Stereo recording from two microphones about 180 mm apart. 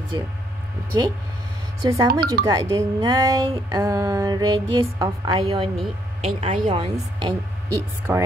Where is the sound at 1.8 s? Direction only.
25° right (ahead or behind).